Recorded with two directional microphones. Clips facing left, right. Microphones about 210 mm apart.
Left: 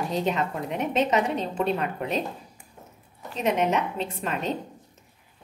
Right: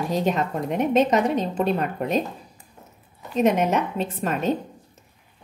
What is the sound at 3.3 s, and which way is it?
A woman's voice, 45° right (ahead or behind).